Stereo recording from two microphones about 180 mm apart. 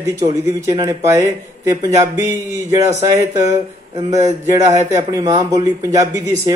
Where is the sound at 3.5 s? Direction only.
40° right (ahead or behind).